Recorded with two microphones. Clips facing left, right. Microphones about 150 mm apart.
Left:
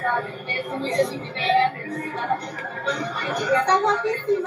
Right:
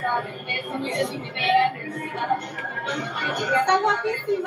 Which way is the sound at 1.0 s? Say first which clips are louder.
Left 1 dB; 20° right (ahead or behind).